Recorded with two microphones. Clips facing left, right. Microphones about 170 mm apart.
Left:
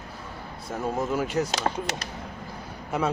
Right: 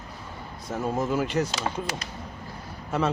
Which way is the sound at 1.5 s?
40° left (ahead or behind).